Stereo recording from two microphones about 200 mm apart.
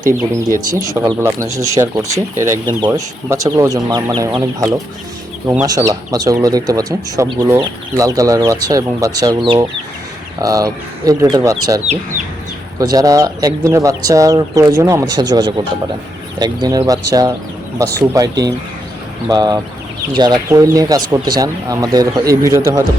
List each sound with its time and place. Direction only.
0.7 s speech: 15° right (ahead or behind)
12.8 s speech: 20° right (ahead or behind)